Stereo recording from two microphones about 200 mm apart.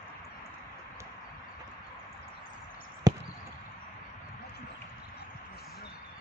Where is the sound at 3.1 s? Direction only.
20° right (ahead or behind).